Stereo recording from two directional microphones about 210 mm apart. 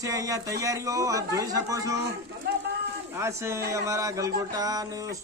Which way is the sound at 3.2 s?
15° right (ahead or behind).